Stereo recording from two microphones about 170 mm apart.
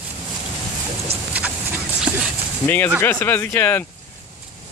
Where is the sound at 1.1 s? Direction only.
35° right (ahead or behind).